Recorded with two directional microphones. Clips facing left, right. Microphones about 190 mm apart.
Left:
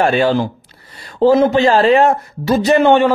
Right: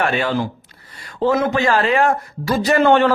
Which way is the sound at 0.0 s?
30° left (ahead or behind).